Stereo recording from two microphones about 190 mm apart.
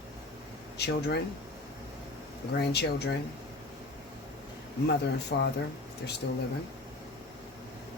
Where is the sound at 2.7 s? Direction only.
60° left (ahead or behind).